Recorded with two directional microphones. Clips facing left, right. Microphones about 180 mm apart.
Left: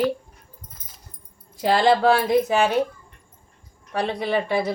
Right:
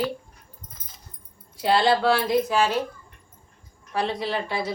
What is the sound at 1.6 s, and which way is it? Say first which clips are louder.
Speech: left 2 dB; 50° left (ahead or behind).